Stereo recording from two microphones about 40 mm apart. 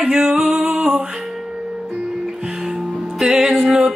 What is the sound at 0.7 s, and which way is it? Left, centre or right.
Music, right.